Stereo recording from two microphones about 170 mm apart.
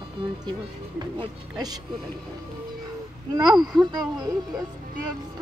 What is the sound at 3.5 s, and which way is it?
Speech, centre (ahead or behind).